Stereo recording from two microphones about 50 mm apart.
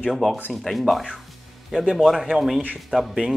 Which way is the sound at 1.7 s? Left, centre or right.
Right.